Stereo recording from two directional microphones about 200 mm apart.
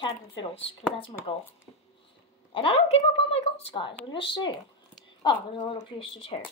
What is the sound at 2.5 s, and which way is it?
A woman's voice, 30° left (ahead or behind).